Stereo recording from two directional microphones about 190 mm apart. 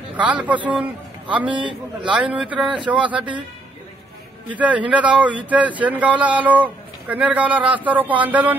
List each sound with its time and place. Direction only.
0.2 s speech: 5° right (ahead or behind)
1.5 s a man's voice: 25° right (ahead or behind)
2.1 s speech: 5° right (ahead or behind)
4.5 s speech: 10° right (ahead or behind)